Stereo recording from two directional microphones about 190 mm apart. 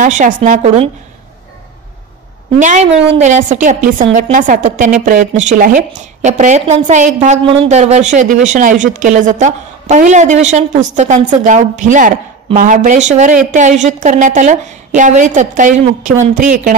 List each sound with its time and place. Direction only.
0.0 s a woman's voice: 40° right (ahead or behind)
2.5 s a woman's voice: 40° right (ahead or behind)